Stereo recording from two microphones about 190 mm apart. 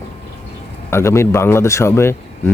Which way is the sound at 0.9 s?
15° left (ahead or behind).